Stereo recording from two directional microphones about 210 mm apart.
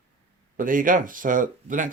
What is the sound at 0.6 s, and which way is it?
Speech, 40° right (ahead or behind).